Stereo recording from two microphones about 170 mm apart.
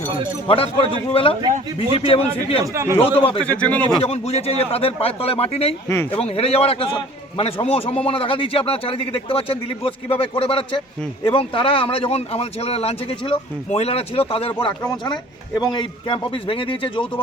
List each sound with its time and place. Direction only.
0.4 s a man's voice: 35° left (ahead or behind)
3.4 s speech: 10° left (ahead or behind)
4.0 s a man's voice: 40° left (ahead or behind)
5.9 s speech: 10° left (ahead or behind)
6.2 s a man's voice: 35° left (ahead or behind)